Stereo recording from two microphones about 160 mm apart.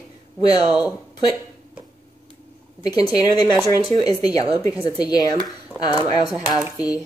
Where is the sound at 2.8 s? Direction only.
25° left (ahead or behind).